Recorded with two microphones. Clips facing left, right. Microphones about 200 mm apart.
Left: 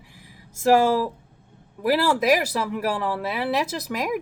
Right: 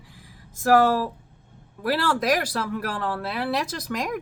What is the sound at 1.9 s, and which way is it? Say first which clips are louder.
Speech: left 3 dB; 10° left (ahead or behind).